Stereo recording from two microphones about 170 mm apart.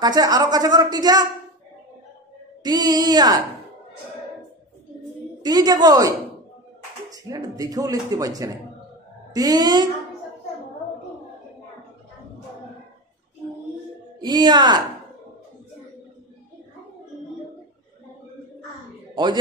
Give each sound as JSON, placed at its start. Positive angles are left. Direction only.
{"t": 0.0, "sound": "speech", "side_deg": -25}
{"t": 2.6, "sound": "speech", "side_deg": -25}
{"t": 5.4, "sound": "speech", "side_deg": -25}
{"t": 7.2, "sound": "speech", "side_deg": -20}
{"t": 14.2, "sound": "speech", "side_deg": -25}